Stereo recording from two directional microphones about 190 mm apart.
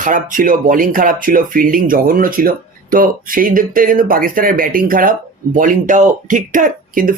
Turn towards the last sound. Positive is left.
turn(degrees=-45)  # may be behind; listen again after turning